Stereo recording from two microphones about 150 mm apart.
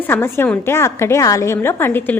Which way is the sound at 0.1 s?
15° left (ahead or behind).